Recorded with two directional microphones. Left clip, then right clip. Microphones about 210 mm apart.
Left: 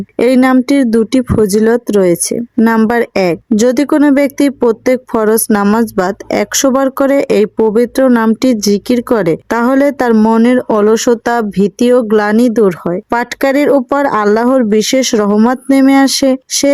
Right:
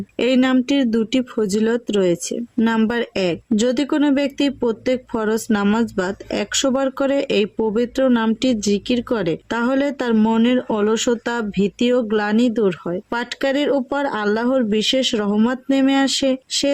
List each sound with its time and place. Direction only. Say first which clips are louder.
0.2 s speech: left 8 dB; 30° left (ahead or behind)